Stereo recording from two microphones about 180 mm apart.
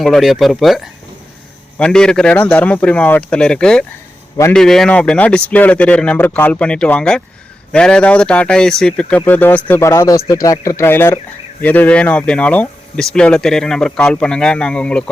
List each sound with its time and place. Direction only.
0.0 s speech: centre (ahead or behind)